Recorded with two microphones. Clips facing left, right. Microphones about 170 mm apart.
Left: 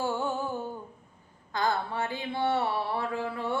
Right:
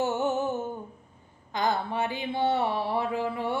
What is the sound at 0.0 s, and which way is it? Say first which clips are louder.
Music: right 4 dB; 20° right (ahead or behind).